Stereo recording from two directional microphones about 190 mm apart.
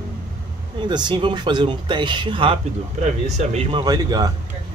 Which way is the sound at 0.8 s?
25° right (ahead or behind).